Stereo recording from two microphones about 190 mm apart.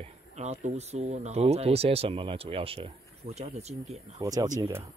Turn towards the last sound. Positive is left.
turn(degrees=-20)  # may be behind; listen again after turning